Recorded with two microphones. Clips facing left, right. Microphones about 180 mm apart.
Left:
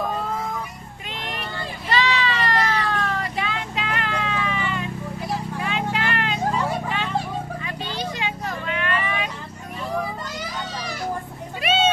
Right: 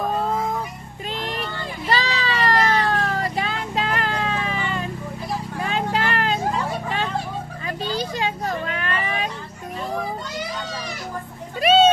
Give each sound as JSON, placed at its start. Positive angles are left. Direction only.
{"t": 1.9, "sound": "cat", "side_deg": -35}
{"t": 5.6, "sound": "vehicle", "side_deg": -40}
{"t": 7.9, "sound": "vehicle", "side_deg": -40}
{"t": 11.6, "sound": "a sound", "side_deg": -35}